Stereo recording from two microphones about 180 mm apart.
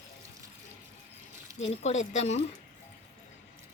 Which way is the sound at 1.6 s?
40° left (ahead or behind).